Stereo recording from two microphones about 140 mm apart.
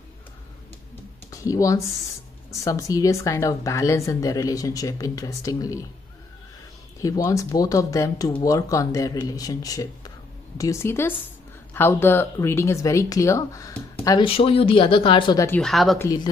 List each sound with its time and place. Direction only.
1.3 s speech: 25° left (ahead or behind)
7.0 s speech: 25° left (ahead or behind)
14.2 s speech: 40° left (ahead or behind)
15.3 s speech: 20° left (ahead or behind)
15.6 s speech: centre (ahead or behind)
16.0 s speech: 25° left (ahead or behind)